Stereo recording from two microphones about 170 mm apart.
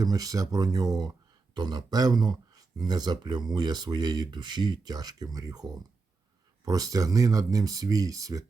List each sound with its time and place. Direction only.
0.0 s speech: 20° right (ahead or behind)
6.7 s speech: 20° right (ahead or behind)